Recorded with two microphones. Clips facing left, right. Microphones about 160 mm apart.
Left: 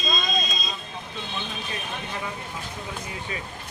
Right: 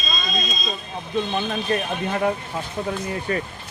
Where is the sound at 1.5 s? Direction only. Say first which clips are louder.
Right 10 dB; 60° right (ahead or behind).